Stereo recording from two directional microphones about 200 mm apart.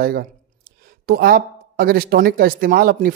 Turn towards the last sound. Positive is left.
turn(degrees=-50)  # may be behind; listen again after turning